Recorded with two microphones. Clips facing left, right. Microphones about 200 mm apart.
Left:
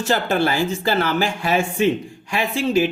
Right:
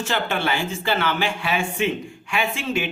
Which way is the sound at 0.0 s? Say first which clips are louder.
Left 5 dB; 40° left (ahead or behind).